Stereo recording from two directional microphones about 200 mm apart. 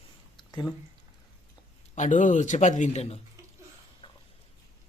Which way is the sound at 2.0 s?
40° left (ahead or behind).